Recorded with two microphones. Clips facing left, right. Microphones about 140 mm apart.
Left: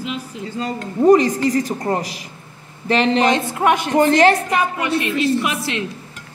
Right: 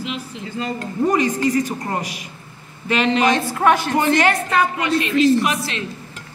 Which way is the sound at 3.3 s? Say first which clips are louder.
Even; 20° left (ahead or behind).